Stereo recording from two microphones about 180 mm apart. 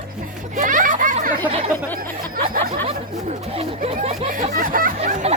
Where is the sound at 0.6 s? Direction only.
45° right (ahead or behind).